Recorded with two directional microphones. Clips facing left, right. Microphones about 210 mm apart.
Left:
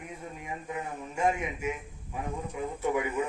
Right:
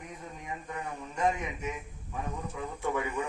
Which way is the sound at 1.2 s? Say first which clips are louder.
Left 2 dB; 10° left (ahead or behind).